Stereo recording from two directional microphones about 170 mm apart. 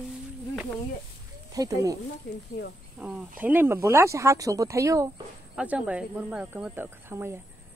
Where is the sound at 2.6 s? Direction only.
90° left.